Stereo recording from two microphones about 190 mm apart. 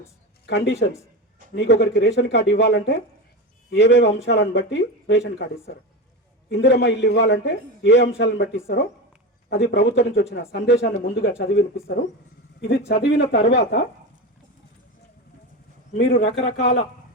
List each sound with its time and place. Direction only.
0.4 s a man's voice: 65° left (ahead or behind)
5.3 s speech: 55° left (ahead or behind)
6.5 s a man's voice: 65° left (ahead or behind)
12.6 s a man's voice: 60° left (ahead or behind)
16.0 s a man's voice: 60° left (ahead or behind)